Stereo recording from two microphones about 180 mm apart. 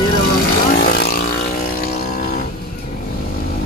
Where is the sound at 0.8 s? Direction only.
55° left (ahead or behind).